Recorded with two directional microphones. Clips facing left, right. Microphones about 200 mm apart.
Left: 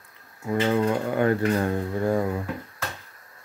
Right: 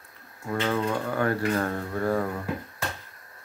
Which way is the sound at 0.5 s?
20° left (ahead or behind).